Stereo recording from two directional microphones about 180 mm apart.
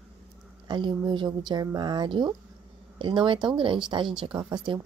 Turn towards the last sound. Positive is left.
turn(degrees=-25)  # may be behind; listen again after turning